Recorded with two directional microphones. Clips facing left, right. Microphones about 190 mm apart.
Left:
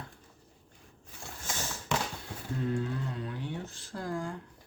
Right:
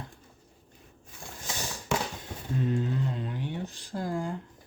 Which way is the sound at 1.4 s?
15° right (ahead or behind).